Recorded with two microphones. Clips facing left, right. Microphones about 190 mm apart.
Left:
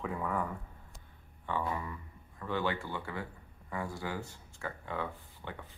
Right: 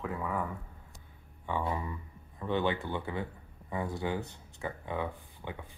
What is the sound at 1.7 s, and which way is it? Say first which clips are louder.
Speech: right 2 dB; 20° right (ahead or behind).